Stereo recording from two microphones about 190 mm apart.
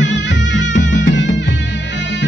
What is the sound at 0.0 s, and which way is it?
Music, 70° left (ahead or behind).